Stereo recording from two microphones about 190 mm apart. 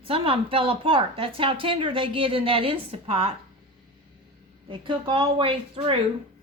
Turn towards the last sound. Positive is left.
turn(degrees=-30)  # may be behind; listen again after turning